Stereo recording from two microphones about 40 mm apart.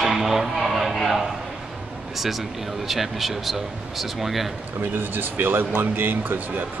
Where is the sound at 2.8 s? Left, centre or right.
Centre.